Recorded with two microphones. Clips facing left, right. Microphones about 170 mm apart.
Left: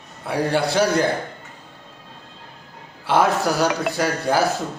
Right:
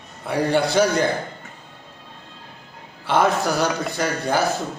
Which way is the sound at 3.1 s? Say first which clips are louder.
Left 1 dB; 5° left (ahead or behind).